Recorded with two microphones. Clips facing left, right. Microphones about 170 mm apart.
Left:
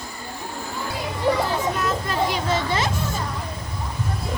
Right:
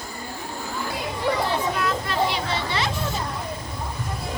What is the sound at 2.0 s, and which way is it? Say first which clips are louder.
Children playing: left 1 dB; 45° left (ahead or behind).